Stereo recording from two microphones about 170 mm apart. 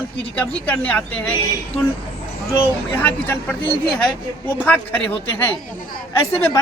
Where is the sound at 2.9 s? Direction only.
10° left (ahead or behind).